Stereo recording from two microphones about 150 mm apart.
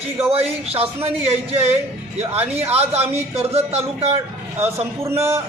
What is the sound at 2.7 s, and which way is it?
Speech, 45° right (ahead or behind).